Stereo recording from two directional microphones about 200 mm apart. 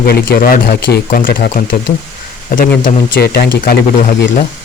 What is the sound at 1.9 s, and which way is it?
Speech, 30° left (ahead or behind).